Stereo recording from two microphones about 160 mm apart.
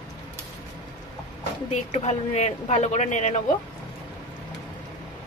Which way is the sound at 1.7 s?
45° left (ahead or behind).